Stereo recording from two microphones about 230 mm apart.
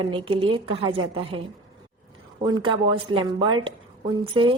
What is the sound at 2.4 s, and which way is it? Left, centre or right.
A woman's voice, right.